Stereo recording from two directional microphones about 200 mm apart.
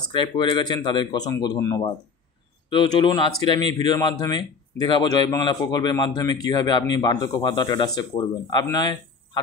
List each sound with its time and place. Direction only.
0.1 s speech: 25° left (ahead or behind)